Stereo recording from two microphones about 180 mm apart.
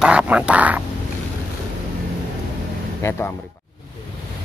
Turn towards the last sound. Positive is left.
turn(degrees=15)  # may be behind; listen again after turning